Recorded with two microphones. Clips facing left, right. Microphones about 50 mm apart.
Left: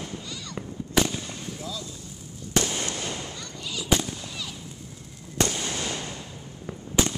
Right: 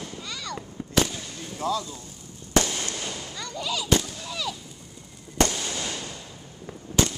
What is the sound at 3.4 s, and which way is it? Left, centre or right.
Fireworks, right.